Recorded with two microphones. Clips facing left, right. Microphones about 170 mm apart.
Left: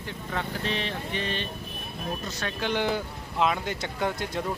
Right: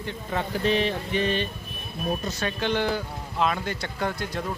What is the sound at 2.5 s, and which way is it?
Speech, 10° left (ahead or behind).